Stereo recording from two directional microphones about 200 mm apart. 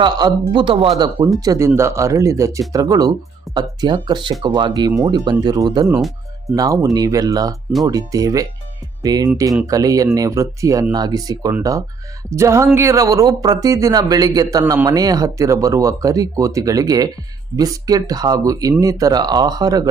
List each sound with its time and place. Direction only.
0.0 s speech: 20° right (ahead or behind)
6.9 s speech: 20° right (ahead or behind)